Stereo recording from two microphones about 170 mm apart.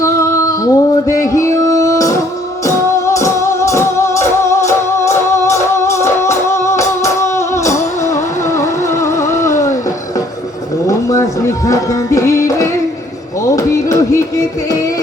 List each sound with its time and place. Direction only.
0.0 s music: 15° left (ahead or behind)
10.8 s music: 20° left (ahead or behind)